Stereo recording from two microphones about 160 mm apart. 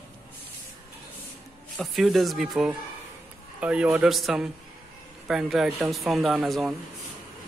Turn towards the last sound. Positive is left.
turn(degrees=0)  # may be behind; listen again after turning